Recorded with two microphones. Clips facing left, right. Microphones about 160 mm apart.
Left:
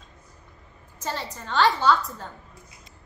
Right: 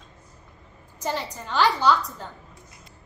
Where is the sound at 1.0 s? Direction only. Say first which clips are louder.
Right 3 dB; 10° right (ahead or behind).